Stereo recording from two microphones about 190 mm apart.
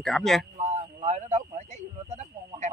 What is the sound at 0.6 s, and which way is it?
Speech, 40° right (ahead or behind).